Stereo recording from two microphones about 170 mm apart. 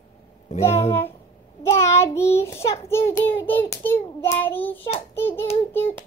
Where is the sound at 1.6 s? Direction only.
15° left (ahead or behind).